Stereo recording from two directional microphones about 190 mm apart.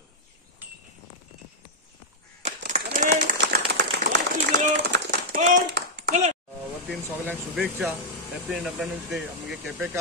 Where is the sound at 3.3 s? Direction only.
65° right (ahead or behind).